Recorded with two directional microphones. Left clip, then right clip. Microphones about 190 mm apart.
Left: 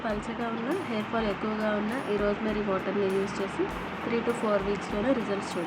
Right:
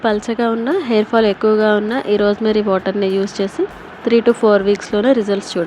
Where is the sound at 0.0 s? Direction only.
50° right (ahead or behind).